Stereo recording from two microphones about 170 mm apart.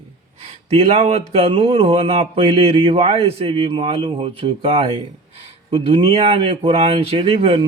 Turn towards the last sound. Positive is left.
turn(degrees=-35)  # may be behind; listen again after turning